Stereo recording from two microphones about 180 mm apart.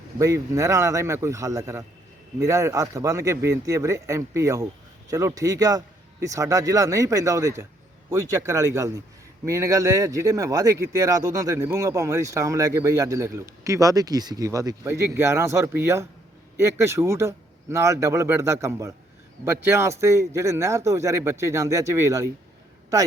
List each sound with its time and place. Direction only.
0.2 s a man's voice: 15° right (ahead or behind)